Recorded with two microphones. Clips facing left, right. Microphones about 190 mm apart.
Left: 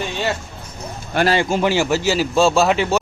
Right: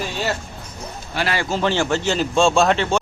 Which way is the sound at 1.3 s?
15° left (ahead or behind).